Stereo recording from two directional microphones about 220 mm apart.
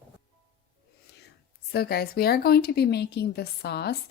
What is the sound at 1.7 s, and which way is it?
A woman's voice, 45° left (ahead or behind).